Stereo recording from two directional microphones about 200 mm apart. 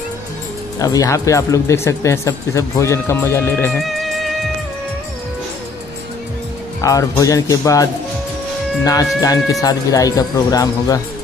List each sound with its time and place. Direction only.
0.7 s speech: 20° left (ahead or behind)
3.8 s music: centre (ahead or behind)
6.8 s speech: 15° left (ahead or behind)